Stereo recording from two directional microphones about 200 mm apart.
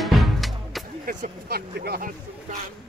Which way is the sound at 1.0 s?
45° right (ahead or behind).